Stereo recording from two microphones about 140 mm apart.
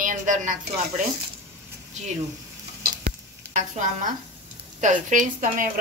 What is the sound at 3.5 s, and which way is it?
A woman's voice, 60° right (ahead or behind).